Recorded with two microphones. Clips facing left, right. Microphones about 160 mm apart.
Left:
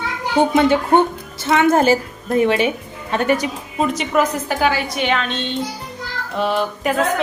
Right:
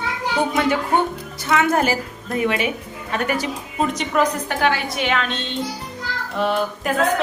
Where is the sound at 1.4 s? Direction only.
25° left (ahead or behind).